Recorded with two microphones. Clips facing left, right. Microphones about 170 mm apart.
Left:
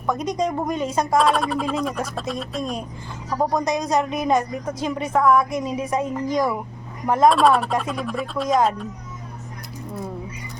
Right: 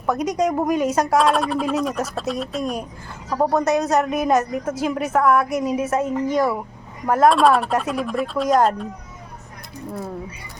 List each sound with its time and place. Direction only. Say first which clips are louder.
0.0 s a woman's voice: right 2 dB; 10° right (ahead or behind)